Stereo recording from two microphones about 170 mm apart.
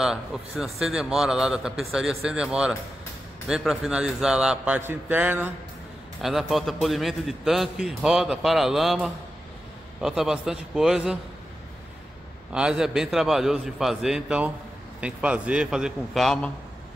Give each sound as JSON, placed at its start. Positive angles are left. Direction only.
{"t": 0.0, "sound": "a man's voice", "side_deg": -5}
{"t": 12.5, "sound": "a man's voice", "side_deg": -5}